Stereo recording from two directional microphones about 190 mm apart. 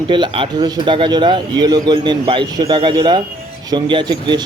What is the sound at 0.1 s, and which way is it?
A man's voice, 25° right (ahead or behind).